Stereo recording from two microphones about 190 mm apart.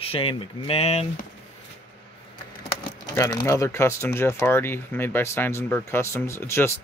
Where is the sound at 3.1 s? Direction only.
15° left (ahead or behind).